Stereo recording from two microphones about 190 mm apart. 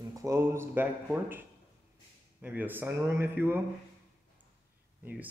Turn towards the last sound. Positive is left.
turn(degrees=-10)  # may be behind; listen again after turning